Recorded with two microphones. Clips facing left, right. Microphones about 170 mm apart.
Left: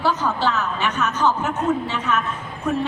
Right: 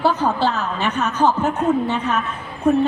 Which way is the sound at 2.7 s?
30° right (ahead or behind).